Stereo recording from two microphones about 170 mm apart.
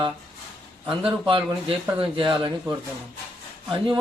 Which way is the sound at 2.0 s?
30° right (ahead or behind).